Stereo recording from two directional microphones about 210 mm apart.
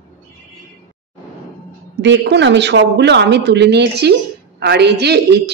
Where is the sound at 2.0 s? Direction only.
55° right (ahead or behind).